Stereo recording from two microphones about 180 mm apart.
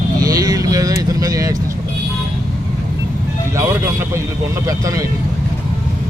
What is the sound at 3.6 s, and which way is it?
Speech, 15° right (ahead or behind).